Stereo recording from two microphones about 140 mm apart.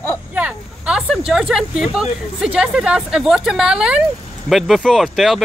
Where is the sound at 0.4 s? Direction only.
5° right (ahead or behind).